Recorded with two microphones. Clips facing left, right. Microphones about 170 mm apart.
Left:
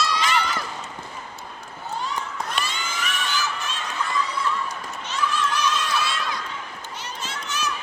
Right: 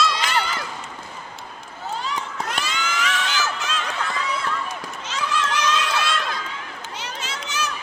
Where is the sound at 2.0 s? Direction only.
90° right.